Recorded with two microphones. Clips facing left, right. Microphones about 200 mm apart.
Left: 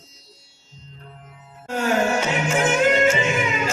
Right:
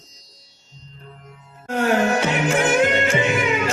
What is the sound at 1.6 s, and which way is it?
Music, 55° right (ahead or behind).